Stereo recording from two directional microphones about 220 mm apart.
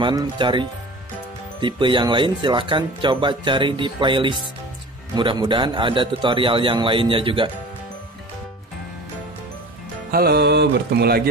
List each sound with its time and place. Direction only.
0.0 s speech: 20° right (ahead or behind)
10.1 s mantra: 45° right (ahead or behind)